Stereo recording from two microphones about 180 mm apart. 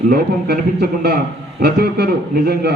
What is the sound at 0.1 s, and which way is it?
A man's voice, 60° right (ahead or behind).